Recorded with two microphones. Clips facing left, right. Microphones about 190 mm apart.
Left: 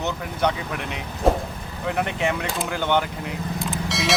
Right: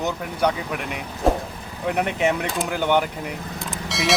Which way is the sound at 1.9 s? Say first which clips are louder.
Right 3 dB; 15° right (ahead or behind).